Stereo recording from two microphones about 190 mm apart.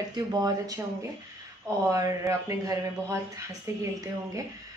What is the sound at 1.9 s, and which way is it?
Speech, 15° right (ahead or behind).